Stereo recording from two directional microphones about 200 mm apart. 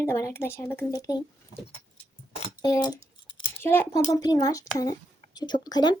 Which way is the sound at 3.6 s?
10° left (ahead or behind).